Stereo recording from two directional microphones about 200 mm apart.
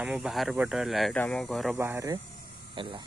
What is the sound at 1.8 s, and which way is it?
Speech, 10° right (ahead or behind).